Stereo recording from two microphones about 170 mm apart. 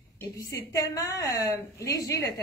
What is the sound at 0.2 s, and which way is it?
A woman's voice, 15° left (ahead or behind).